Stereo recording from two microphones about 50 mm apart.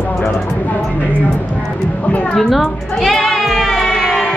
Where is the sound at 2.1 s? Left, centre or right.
Left.